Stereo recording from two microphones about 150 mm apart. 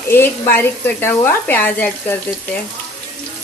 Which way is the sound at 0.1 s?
15° left (ahead or behind).